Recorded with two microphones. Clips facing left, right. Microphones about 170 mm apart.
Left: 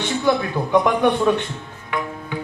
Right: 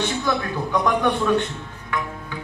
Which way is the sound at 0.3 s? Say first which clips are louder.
Left 5 dB; 20° left (ahead or behind).